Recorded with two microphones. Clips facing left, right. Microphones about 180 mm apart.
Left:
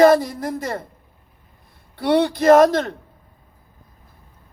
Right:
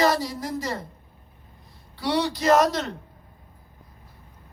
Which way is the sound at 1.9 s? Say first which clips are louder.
Left 7 dB; 55° left (ahead or behind).